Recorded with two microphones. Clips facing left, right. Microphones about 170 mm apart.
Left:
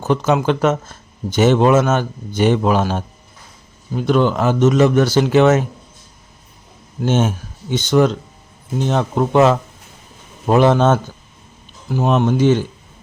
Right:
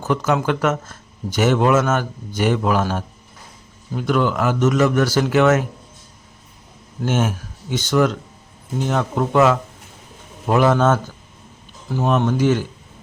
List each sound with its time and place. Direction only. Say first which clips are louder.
0.0 s speech: left 3 dB; 20° left (ahead or behind)
7.0 s speech: left 3 dB; 25° left (ahead or behind)